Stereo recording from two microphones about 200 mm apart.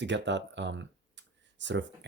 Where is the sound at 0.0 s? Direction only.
60° right (ahead or behind).